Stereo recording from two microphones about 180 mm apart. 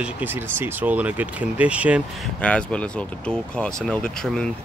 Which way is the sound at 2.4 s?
5° left (ahead or behind).